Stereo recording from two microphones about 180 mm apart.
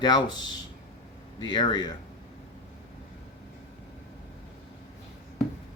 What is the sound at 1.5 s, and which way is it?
Speech, 25° left (ahead or behind).